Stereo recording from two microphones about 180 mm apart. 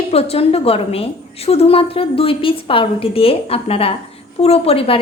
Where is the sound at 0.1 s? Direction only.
35° left (ahead or behind).